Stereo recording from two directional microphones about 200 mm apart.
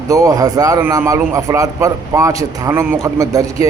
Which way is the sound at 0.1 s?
15° right (ahead or behind).